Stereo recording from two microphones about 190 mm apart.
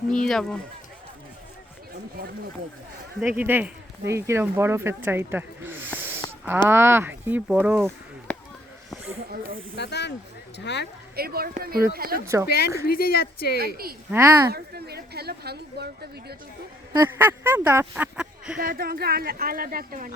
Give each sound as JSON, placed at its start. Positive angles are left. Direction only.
{"t": 0.3, "sound": "speech", "side_deg": 0}
{"t": 3.2, "sound": "speech", "side_deg": -10}
{"t": 6.0, "sound": "a sound", "side_deg": -10}
{"t": 6.7, "sound": "speech", "side_deg": -10}
{"t": 8.3, "sound": "a sound", "side_deg": 5}
{"t": 9.7, "sound": "speech", "side_deg": 65}
{"t": 11.1, "sound": "speech", "side_deg": -55}
{"t": 12.2, "sound": "speech", "side_deg": -15}
{"t": 12.5, "sound": "speech", "side_deg": 55}
{"t": 14.1, "sound": "speech", "side_deg": -15}
{"t": 14.5, "sound": "a woman's voice", "side_deg": -55}
{"t": 16.9, "sound": "speech", "side_deg": -10}
{"t": 18.6, "sound": "speech", "side_deg": -50}